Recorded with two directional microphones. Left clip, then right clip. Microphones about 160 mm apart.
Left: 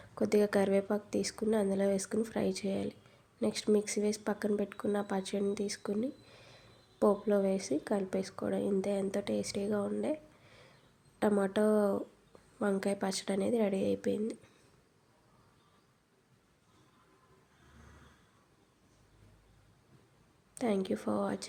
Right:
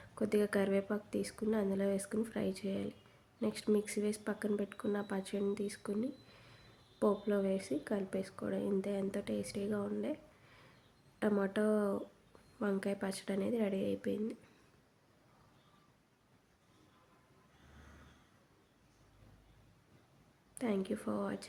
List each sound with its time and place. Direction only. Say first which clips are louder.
0.1 s speech: left 5 dB; 20° left (ahead or behind)
11.2 s speech: left 5 dB; 20° left (ahead or behind)
20.6 s speech: left 5 dB; 20° left (ahead or behind)